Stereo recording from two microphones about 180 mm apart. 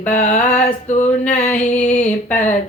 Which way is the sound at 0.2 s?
40° left (ahead or behind).